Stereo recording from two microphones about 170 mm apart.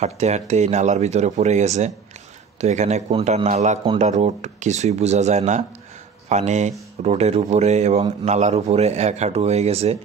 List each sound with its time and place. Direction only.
0.0 s a man's voice: 40° right (ahead or behind)